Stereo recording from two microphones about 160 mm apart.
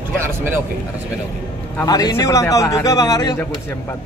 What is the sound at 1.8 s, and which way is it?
A man's voice, 25° left (ahead or behind).